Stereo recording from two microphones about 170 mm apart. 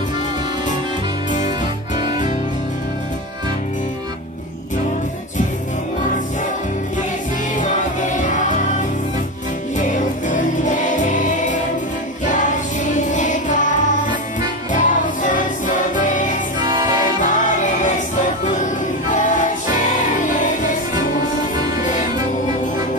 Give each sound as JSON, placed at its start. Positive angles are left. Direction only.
{"t": 2.0, "sound": "music", "side_deg": -30}
{"t": 9.8, "sound": "music", "side_deg": 45}
{"t": 16.6, "sound": "music", "side_deg": -25}
{"t": 17.2, "sound": "music", "side_deg": 50}
{"t": 19.0, "sound": "music", "side_deg": 50}